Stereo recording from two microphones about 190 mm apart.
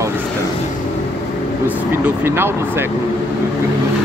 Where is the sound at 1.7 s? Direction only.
10° right (ahead or behind).